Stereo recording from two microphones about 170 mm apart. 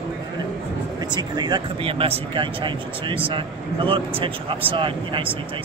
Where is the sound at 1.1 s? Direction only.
25° right (ahead or behind).